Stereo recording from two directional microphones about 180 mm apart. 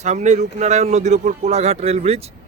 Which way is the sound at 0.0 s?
40° right (ahead or behind).